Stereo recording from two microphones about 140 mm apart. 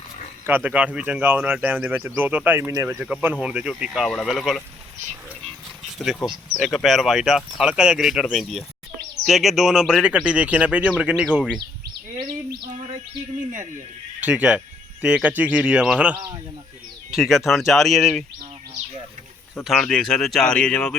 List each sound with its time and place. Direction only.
0.4 s speech: 15° right (ahead or behind)
6.2 s speech: centre (ahead or behind)
14.2 s speech: 10° right (ahead or behind)
17.2 s speech: centre (ahead or behind)
19.6 s speech: centre (ahead or behind)